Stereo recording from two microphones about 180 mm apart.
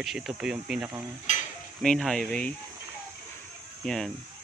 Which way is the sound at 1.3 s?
40° left (ahead or behind).